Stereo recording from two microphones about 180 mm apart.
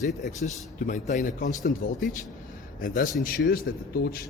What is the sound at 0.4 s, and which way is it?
A man's voice, 45° left (ahead or behind).